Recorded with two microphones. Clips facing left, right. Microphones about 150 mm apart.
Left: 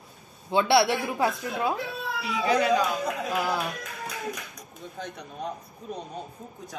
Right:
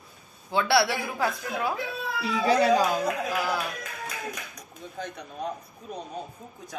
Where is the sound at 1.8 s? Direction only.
Centre (ahead or behind).